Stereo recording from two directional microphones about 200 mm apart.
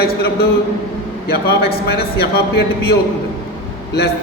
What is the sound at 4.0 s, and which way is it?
Speech, 55° left (ahead or behind).